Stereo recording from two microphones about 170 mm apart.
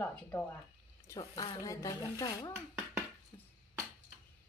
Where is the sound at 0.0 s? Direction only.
10° left (ahead or behind).